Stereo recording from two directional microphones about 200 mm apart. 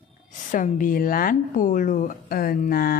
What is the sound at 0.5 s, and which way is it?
A woman's voice, 40° left (ahead or behind).